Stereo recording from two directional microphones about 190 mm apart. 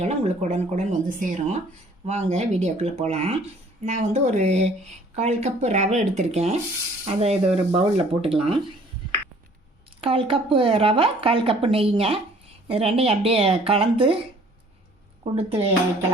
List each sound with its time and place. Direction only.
0.0 s speech: 35° right (ahead or behind)
10.0 s speech: 30° right (ahead or behind)
15.2 s speech: 30° right (ahead or behind)